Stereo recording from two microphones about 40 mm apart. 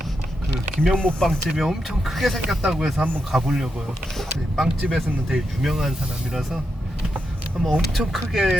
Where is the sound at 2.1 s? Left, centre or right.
Centre.